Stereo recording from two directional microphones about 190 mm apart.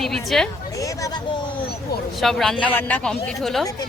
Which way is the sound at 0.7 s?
15° left (ahead or behind).